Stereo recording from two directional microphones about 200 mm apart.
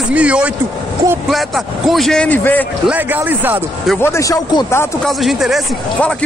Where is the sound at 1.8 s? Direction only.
Centre (ahead or behind).